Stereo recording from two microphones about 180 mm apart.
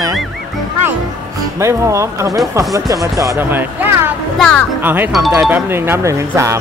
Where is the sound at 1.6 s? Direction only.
15° right (ahead or behind).